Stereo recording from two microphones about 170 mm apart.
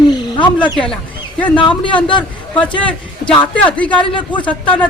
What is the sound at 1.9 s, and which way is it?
Speech, 30° left (ahead or behind).